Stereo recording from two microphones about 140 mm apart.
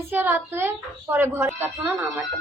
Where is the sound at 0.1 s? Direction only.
15° right (ahead or behind).